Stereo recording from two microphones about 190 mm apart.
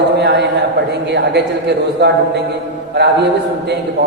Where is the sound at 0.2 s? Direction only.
65° right (ahead or behind).